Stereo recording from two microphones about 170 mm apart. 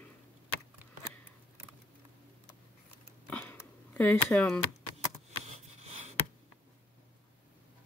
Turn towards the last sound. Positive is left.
turn(degrees=-40)  # may be behind; listen again after turning